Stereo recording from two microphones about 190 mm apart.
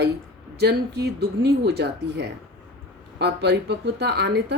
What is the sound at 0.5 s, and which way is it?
Speech, 60° right (ahead or behind).